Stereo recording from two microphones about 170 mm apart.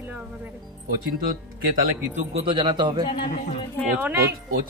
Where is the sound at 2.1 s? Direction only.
35° right (ahead or behind).